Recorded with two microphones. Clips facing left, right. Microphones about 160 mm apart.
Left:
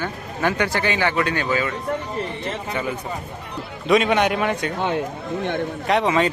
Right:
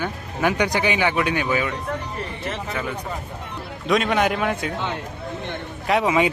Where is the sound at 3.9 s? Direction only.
Centre (ahead or behind).